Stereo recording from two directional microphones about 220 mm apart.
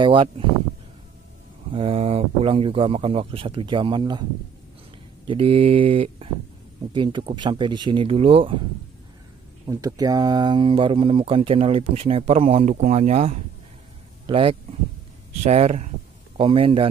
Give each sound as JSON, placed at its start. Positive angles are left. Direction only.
{"t": 0.0, "sound": "speech", "side_deg": -20}
{"t": 1.7, "sound": "speech", "side_deg": -25}
{"t": 9.7, "sound": "speech", "side_deg": -15}